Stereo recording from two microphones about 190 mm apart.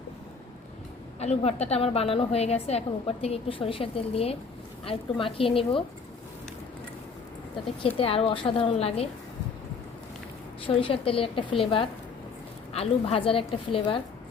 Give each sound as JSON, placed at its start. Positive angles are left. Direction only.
{"t": 1.2, "sound": "a woman's voice", "side_deg": 35}
{"t": 7.8, "sound": "a woman's voice", "side_deg": 30}
{"t": 10.7, "sound": "a woman's voice", "side_deg": 30}